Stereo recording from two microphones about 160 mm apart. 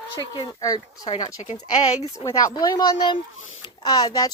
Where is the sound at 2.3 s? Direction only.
25° left (ahead or behind).